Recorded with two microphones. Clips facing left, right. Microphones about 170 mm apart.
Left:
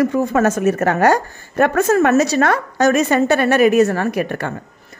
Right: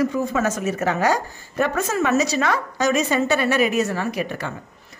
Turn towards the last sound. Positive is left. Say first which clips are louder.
# left 5 dB
turn(degrees=55)  # may be behind; listen again after turning